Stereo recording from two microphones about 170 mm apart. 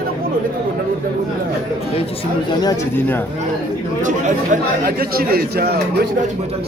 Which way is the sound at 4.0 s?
50° right (ahead or behind).